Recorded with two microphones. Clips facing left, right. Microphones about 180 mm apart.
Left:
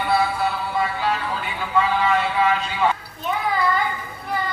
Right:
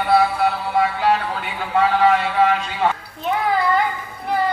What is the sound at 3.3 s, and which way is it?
Child singing, 70° right (ahead or behind).